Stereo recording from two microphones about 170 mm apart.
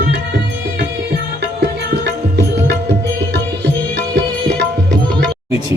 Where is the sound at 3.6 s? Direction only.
90° right.